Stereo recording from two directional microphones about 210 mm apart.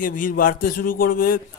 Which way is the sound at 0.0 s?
40° left (ahead or behind).